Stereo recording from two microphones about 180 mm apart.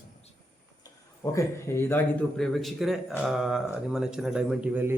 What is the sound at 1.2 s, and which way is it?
A woman's voice, 15° left (ahead or behind).